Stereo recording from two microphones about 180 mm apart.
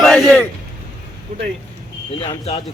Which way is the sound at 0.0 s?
5° left (ahead or behind).